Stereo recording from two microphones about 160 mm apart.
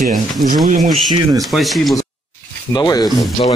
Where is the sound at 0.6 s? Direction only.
50° right (ahead or behind).